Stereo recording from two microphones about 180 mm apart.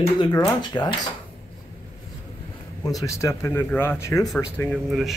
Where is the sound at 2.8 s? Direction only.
20° left (ahead or behind).